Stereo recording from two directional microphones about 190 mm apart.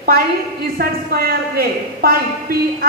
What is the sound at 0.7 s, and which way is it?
A woman's voice, 50° right (ahead or behind).